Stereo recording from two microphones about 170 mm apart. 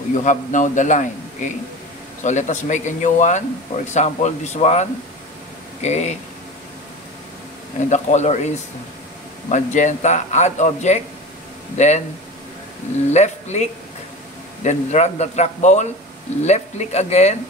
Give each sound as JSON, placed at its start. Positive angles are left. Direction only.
{"t": 0.1, "sound": "speech", "side_deg": 45}
{"t": 7.9, "sound": "speech", "side_deg": 45}
{"t": 9.5, "sound": "a man's voice", "side_deg": 45}
{"t": 13.1, "sound": "a man's voice", "side_deg": 40}